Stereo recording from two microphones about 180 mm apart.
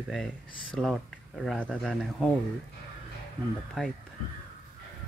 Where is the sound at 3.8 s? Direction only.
Centre (ahead or behind).